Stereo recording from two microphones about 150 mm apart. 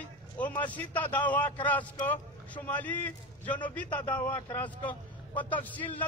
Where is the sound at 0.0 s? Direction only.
10° left (ahead or behind).